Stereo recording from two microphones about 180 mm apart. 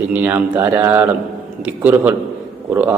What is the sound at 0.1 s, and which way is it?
A man's voice, 10° right (ahead or behind).